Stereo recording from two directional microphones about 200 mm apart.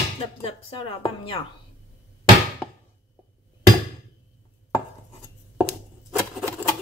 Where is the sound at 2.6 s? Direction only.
10° left (ahead or behind).